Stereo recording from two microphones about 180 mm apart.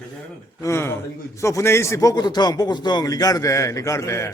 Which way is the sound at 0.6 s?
15° left (ahead or behind).